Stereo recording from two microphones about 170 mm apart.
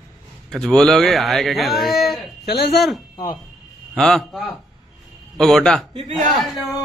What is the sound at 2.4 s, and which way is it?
Speech, 70° left (ahead or behind).